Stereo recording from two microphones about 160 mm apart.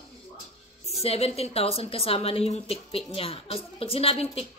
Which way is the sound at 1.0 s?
40° left (ahead or behind).